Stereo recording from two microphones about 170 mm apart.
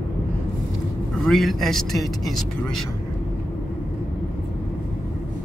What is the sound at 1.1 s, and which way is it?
Speech, centre (ahead or behind).